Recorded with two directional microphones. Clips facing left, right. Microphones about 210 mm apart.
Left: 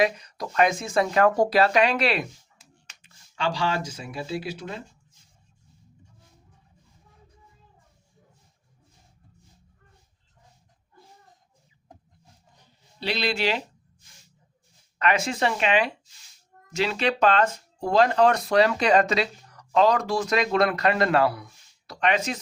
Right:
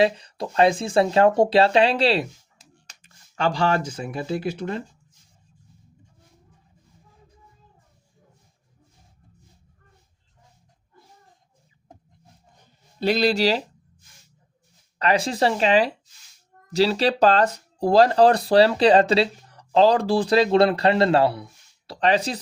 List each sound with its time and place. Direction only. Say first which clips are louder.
0.0 s speech: right 3 dB; 30° right (ahead or behind)
2.8 s speech: right 2 dB; 45° right (ahead or behind)
12.5 s a sound: right 8 dB; 45° right (ahead or behind)
14.9 s speech: right 3 dB; 35° right (ahead or behind)